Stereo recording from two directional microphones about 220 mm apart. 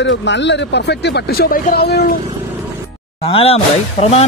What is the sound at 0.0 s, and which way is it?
Speech, 55° left (ahead or behind).